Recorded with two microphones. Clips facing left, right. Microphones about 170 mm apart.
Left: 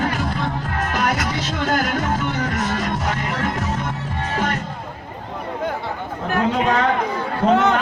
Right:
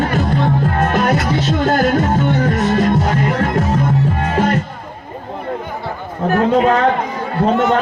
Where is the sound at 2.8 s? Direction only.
45° right (ahead or behind).